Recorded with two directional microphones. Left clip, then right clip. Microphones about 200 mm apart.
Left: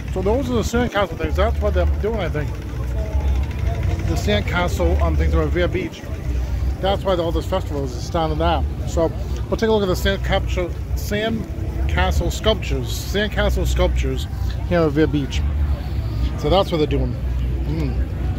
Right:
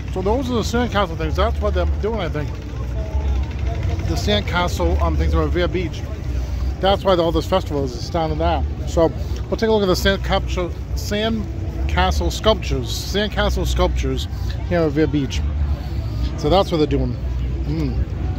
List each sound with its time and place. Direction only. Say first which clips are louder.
0.1 s speech: even; 15° right (ahead or behind)
4.1 s speech: right 1 dB; 20° right (ahead or behind)
6.8 s speech: right 4 dB; 65° right (ahead or behind)
8.1 s speech: left 1 dB; 10° right (ahead or behind)
9.0 s speech: right 3 dB; 50° right (ahead or behind)
9.5 s speech: even; 5° right (ahead or behind)
9.8 s speech: right 3 dB; 45° right (ahead or behind)
10.2 s speech: right 1 dB; 30° right (ahead or behind)
13.1 s speech: even; 20° right (ahead or behind)
14.7 s speech: left 1 dB; 5° right (ahead or behind)
16.3 s speech: right 1 dB; 25° right (ahead or behind)